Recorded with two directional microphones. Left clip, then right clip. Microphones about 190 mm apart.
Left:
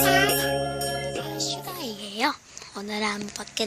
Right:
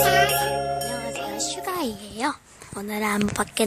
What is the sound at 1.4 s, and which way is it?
Music, 45° right (ahead or behind).